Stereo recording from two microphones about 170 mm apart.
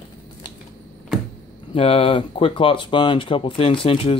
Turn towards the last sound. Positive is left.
turn(degrees=35)  # may be behind; listen again after turning